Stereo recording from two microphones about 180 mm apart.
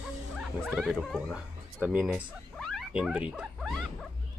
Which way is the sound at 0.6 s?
5° right (ahead or behind).